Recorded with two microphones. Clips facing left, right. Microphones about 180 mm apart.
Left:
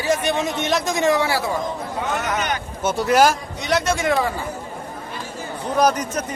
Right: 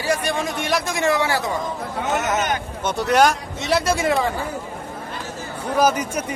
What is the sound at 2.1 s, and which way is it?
Speech, 45° right (ahead or behind).